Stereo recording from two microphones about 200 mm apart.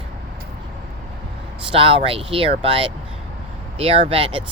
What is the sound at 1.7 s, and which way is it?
Speech, 25° right (ahead or behind).